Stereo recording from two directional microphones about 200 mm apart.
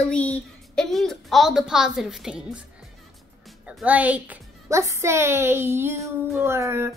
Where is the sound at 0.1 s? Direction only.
5° left (ahead or behind).